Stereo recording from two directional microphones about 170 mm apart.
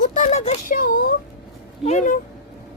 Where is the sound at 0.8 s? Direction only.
60° left (ahead or behind).